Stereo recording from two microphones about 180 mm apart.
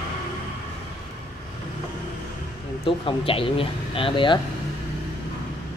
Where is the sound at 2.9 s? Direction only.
30° left (ahead or behind).